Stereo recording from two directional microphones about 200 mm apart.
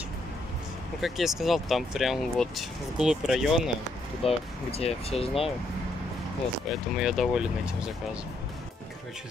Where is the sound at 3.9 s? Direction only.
30° left (ahead or behind).